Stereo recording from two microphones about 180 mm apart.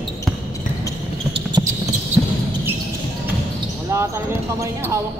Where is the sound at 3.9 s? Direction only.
15° right (ahead or behind).